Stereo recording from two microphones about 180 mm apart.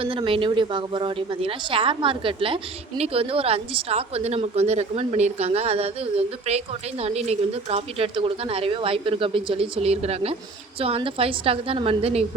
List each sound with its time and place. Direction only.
0.0 s a woman's voice: 30° right (ahead or behind)